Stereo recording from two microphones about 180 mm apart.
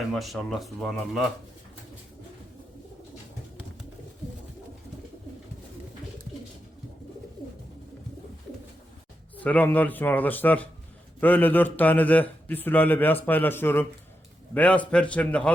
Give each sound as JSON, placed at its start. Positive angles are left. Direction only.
{"t": 0.1, "sound": "speech", "side_deg": 0}
{"t": 9.4, "sound": "a man's voice", "side_deg": 10}